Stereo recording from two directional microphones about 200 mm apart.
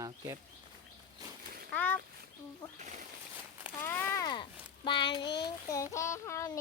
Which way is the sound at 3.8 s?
10° left (ahead or behind).